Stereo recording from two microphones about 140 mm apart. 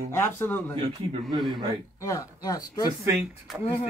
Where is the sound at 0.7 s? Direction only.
40° right (ahead or behind).